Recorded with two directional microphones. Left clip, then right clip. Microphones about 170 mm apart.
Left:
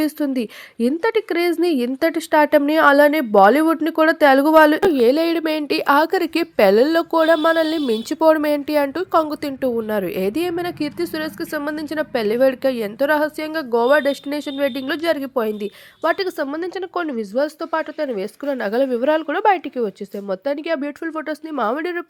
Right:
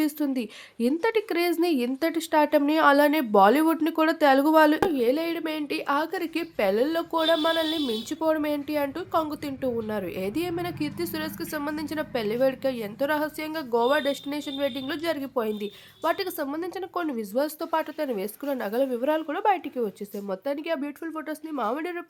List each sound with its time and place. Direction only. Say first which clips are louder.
0.0 s a woman's voice: left 6 dB; 30° left (ahead or behind)
4.9 s a woman's voice: left 9 dB; 50° left (ahead or behind); by 22.0 s 25° left (ahead or behind)